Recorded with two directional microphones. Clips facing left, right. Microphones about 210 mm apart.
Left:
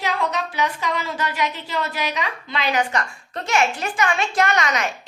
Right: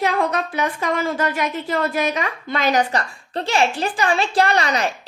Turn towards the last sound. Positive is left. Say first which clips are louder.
# right 2 dB
turn(degrees=-35)  # may be behind; listen again after turning